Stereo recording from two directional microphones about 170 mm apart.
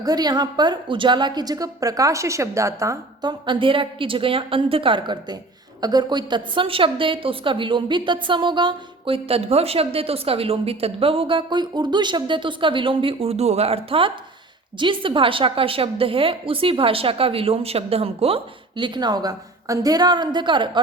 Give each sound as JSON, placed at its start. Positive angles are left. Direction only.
{"t": 0.0, "sound": "a woman's voice", "side_deg": -25}